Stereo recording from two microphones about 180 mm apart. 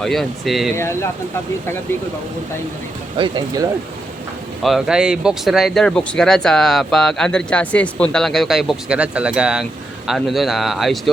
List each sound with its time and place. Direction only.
0.0 s speech: centre (ahead or behind)
1.6 s speech: 15° left (ahead or behind)
3.2 s speech: 25° right (ahead or behind)
4.6 s speech: centre (ahead or behind)